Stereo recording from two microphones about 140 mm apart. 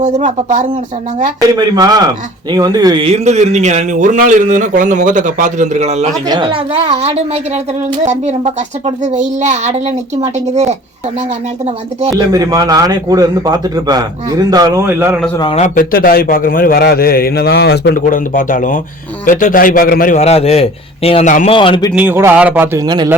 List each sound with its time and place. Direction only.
0.0 s speech: 60° right (ahead or behind)
1.4 s a man's voice: 30° right (ahead or behind)
3.1 s speech: 55° right (ahead or behind)
6.2 s a woman's voice: 35° right (ahead or behind); by 10.8 s 50° right (ahead or behind)
12.3 s a man's voice: 25° right (ahead or behind)
15.5 s a man's voice: 60° left (ahead or behind); by 20.1 s 90° left
20.1 s a man's voice: 50° left (ahead or behind)
21.9 s speech: 15° right (ahead or behind)